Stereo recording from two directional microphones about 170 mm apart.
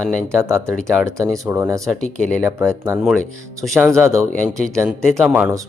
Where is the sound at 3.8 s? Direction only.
15° right (ahead or behind).